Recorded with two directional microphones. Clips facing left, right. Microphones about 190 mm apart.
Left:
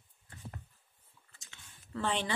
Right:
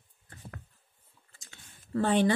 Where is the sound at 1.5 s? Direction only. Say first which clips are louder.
Right 10 dB; 45° right (ahead or behind).